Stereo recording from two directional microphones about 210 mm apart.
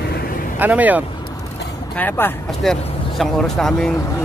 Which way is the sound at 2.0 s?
10° left (ahead or behind).